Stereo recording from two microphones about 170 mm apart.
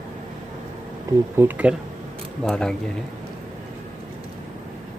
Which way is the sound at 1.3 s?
10° right (ahead or behind).